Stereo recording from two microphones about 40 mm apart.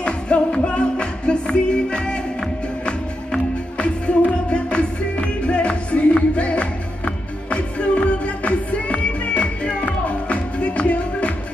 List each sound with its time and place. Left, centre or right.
0.0 s music: left